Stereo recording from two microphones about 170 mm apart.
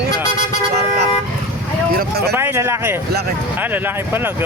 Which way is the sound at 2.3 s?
15° right (ahead or behind).